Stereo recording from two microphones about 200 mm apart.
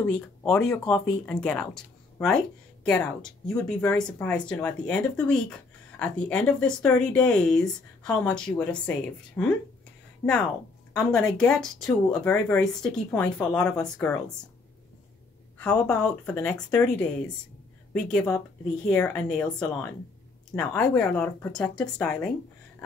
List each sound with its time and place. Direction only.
0.0 s speech: 5° left (ahead or behind)
11.3 s speech: 5° left (ahead or behind)
15.5 s speech: 5° left (ahead or behind)